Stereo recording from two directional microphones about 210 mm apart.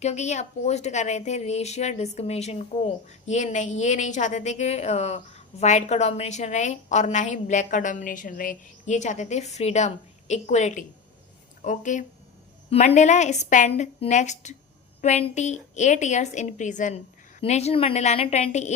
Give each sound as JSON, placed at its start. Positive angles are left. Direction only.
{"t": 0.0, "sound": "a woman's voice", "side_deg": 35}